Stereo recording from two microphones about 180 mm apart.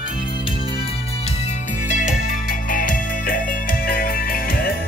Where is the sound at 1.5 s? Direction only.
45° left (ahead or behind).